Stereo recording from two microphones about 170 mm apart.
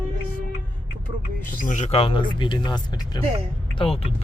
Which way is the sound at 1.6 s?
45° left (ahead or behind).